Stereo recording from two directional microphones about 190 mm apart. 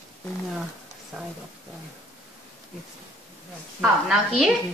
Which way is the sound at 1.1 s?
5° right (ahead or behind).